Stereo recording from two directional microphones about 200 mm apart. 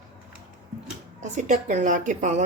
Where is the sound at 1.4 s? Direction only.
40° right (ahead or behind).